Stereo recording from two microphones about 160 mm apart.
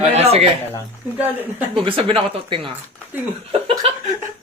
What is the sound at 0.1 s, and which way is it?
Speech, 40° right (ahead or behind).